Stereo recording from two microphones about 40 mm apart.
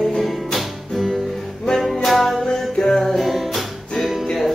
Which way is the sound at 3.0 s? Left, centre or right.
Centre.